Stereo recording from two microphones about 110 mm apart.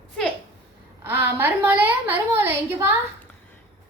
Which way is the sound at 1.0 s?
20° right (ahead or behind).